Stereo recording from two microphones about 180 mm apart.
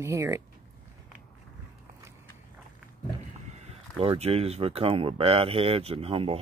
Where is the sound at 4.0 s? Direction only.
35° right (ahead or behind).